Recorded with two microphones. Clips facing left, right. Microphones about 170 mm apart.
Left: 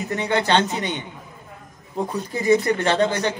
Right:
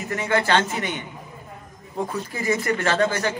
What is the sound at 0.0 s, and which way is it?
A man's voice, 20° left (ahead or behind).